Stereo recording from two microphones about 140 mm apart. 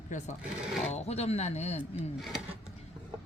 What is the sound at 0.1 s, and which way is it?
Speech, 60° left (ahead or behind).